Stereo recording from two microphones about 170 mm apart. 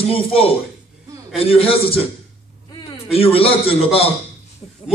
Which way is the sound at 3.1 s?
35° left (ahead or behind).